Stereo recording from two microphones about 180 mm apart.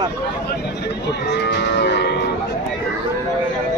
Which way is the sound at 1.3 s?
70° left (ahead or behind).